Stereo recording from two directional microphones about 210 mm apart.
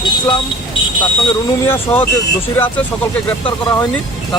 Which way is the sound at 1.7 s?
10° left (ahead or behind).